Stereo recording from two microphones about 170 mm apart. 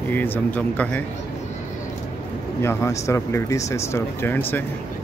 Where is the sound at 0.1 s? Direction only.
10° left (ahead or behind).